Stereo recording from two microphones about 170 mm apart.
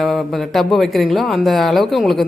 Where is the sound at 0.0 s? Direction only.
Centre (ahead or behind).